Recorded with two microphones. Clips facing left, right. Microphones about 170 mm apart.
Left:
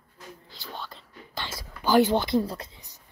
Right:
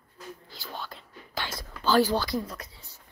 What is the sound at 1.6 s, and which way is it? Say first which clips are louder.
Speech: left 2 dB; 15° left (ahead or behind).